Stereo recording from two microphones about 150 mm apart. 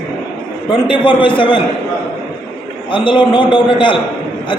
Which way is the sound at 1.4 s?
30° left (ahead or behind).